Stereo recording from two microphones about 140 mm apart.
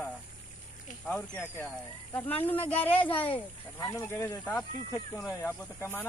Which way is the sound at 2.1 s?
15° left (ahead or behind).